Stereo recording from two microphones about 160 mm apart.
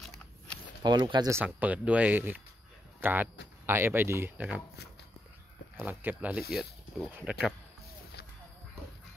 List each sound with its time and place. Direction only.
0.8 s speech: 30° right (ahead or behind)
1.3 s speech: 10° right (ahead or behind)
5.8 s speech: 10° right (ahead or behind)